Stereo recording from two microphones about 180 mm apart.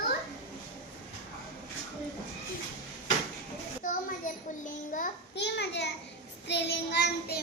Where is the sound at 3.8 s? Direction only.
45° left (ahead or behind).